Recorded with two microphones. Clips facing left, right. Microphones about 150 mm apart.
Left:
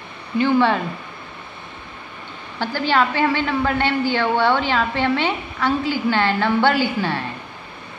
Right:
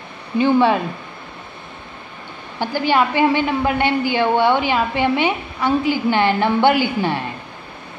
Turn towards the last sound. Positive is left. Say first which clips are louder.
# right 2 dB
turn(degrees=-15)  # may be behind; listen again after turning